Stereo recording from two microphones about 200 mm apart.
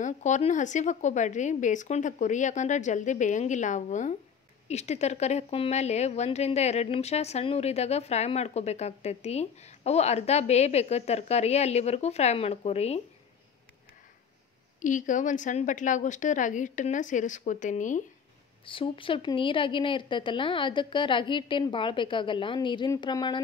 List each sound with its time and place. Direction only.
0.0 s speech: 35° left (ahead or behind)
14.8 s speech: 40° left (ahead or behind)
18.7 s speech: 25° left (ahead or behind)